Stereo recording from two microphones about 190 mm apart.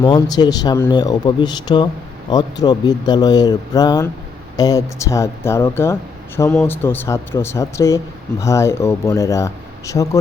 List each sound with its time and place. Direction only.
0.0 s speech: 20° left (ahead or behind)